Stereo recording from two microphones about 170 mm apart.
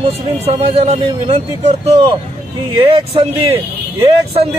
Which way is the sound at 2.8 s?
35° right (ahead or behind).